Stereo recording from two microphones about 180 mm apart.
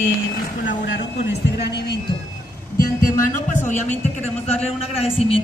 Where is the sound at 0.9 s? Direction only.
75° left (ahead or behind).